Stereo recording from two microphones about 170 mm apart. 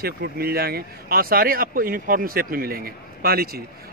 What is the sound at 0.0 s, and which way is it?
Speech, 65° right (ahead or behind).